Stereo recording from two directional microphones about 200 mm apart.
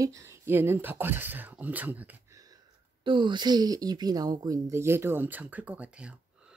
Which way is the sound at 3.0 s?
25° right (ahead or behind).